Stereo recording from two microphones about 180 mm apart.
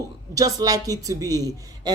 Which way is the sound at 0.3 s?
20° right (ahead or behind).